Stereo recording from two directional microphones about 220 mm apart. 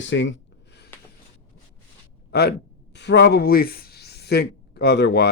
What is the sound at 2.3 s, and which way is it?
Speech, 45° left (ahead or behind).